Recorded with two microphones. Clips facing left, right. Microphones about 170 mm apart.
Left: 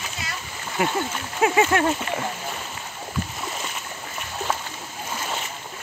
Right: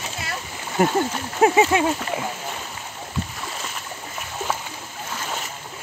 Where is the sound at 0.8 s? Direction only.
45° right (ahead or behind).